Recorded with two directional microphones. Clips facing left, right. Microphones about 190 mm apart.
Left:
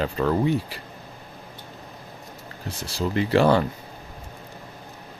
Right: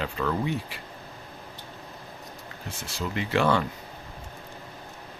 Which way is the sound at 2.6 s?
35° left (ahead or behind).